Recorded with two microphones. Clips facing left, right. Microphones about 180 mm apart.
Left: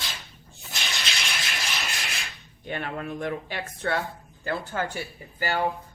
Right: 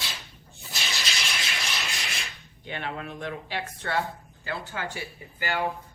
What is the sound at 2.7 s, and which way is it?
A man's voice, 45° left (ahead or behind).